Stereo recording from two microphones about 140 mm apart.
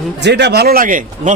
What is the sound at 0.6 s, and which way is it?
Speech, 80° right.